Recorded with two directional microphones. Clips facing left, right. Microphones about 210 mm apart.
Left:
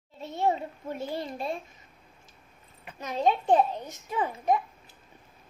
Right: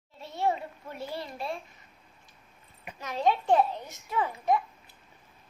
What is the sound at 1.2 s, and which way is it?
Speech, 20° left (ahead or behind).